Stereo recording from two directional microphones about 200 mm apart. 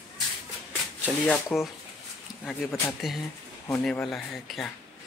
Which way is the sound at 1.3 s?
Centre (ahead or behind).